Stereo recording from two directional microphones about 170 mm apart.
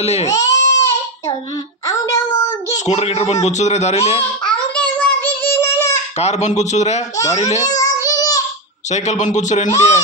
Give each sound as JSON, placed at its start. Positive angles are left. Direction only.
{"t": 0.0, "sound": "speech", "side_deg": 40}
{"t": 0.3, "sound": "baby cry", "side_deg": 20}
{"t": 1.9, "sound": "child singing", "side_deg": 20}
{"t": 2.8, "sound": "speech", "side_deg": 40}
{"t": 4.4, "sound": "a sound", "side_deg": 5}
{"t": 6.1, "sound": "speech", "side_deg": 40}
{"t": 7.7, "sound": "child singing", "side_deg": 20}
{"t": 8.9, "sound": "speech", "side_deg": 45}